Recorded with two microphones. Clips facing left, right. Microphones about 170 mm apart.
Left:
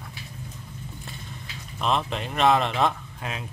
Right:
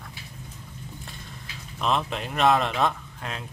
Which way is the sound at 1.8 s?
Centre (ahead or behind).